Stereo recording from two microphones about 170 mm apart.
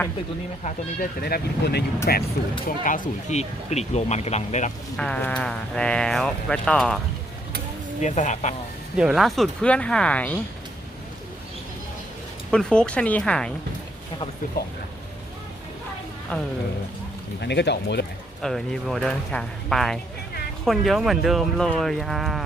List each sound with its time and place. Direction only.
1.2 s speech: 70° left (ahead or behind)
2.8 s speech: 50° left (ahead or behind)
4.9 s speech: 5° left (ahead or behind)
8.0 s speech: 45° left (ahead or behind)
9.0 s speech: 5° right (ahead or behind)
12.5 s speech: 5° left (ahead or behind)
14.6 s speech: 65° left (ahead or behind)
16.3 s speech: 5° left (ahead or behind)
17.4 s speech: 90° left
18.4 s speech: centre (ahead or behind)